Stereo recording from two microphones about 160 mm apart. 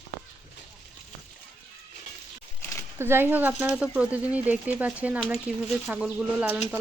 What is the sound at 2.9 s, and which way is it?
Speech, 15° right (ahead or behind).